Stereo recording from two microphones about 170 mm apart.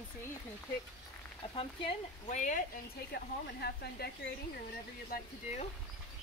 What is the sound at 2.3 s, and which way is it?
Speech, 45° left (ahead or behind).